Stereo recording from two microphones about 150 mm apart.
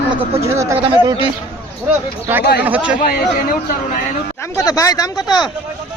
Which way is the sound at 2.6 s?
10° right (ahead or behind).